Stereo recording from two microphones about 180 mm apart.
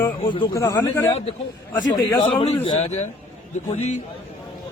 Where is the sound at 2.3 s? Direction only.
30° left (ahead or behind).